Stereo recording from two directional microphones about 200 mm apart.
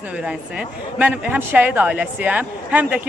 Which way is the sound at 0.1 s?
5° right (ahead or behind).